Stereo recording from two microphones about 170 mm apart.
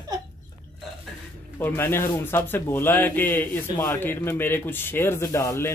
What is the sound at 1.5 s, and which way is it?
Speech, 10° left (ahead or behind).